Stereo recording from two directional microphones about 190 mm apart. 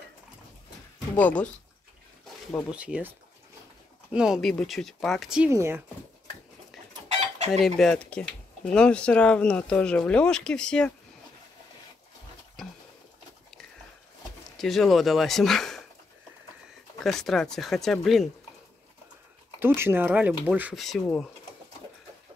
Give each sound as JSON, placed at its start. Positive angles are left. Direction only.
{"t": 1.1, "sound": "speech", "side_deg": 5}
{"t": 2.7, "sound": "speech", "side_deg": -5}
{"t": 5.5, "sound": "speech", "side_deg": -15}
{"t": 7.1, "sound": "chicken", "side_deg": -35}
{"t": 7.6, "sound": "speech", "side_deg": 0}
{"t": 14.6, "sound": "speech", "side_deg": 0}
{"t": 17.0, "sound": "speech", "side_deg": 0}
{"t": 19.6, "sound": "speech", "side_deg": -10}